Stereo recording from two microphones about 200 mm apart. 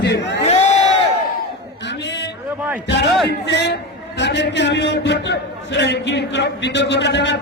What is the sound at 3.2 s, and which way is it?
A man's voice, 60° left (ahead or behind).